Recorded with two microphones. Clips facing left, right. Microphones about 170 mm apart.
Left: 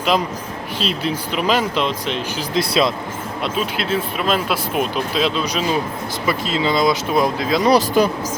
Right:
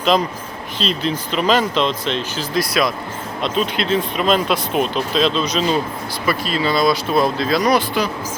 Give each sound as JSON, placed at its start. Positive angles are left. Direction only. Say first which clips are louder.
{"t": 0.8, "sound": "speech", "louder": "right 1 dB", "side_deg": 10}
{"t": 2.6, "sound": "speech", "louder": "left 1 dB", "side_deg": 25}
{"t": 3.4, "sound": "speech", "louder": "right 3 dB", "side_deg": 5}
{"t": 6.2, "sound": "speech", "louder": "even", "side_deg": 20}
{"t": 7.6, "sound": "speech", "louder": "left 3 dB", "side_deg": 35}